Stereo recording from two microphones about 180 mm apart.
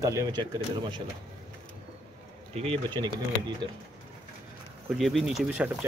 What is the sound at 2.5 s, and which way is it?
Speech, 35° right (ahead or behind).